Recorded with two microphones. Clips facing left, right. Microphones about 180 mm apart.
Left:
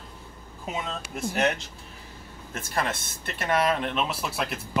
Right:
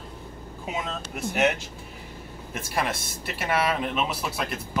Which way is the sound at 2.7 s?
10° right (ahead or behind).